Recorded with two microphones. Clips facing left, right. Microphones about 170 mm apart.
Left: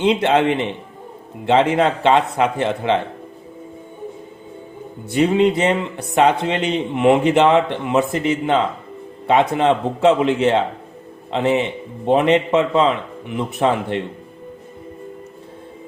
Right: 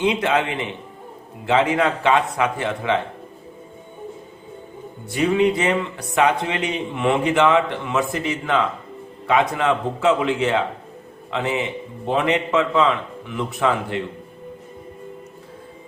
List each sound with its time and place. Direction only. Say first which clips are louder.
0.1 s speech: left 5 dB; 25° left (ahead or behind)
5.1 s speech: left 3 dB; 25° left (ahead or behind)
11.3 s speech: left 5 dB; 25° left (ahead or behind)